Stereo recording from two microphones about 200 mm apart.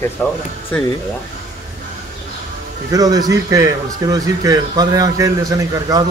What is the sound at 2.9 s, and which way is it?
A man's voice, 20° right (ahead or behind).